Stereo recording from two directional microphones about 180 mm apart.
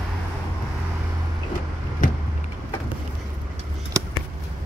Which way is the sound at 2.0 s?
50° left (ahead or behind).